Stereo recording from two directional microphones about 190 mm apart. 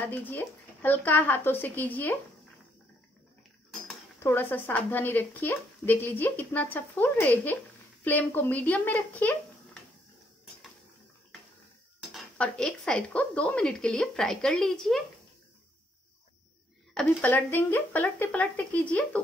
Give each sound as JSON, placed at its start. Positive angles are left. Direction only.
{"t": 0.0, "sound": "speech", "side_deg": 10}
{"t": 4.2, "sound": "speech", "side_deg": 10}
{"t": 12.1, "sound": "a woman's voice", "side_deg": 5}
{"t": 16.9, "sound": "speech", "side_deg": 5}